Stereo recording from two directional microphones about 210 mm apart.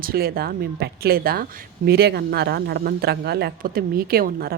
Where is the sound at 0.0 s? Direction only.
45° right (ahead or behind).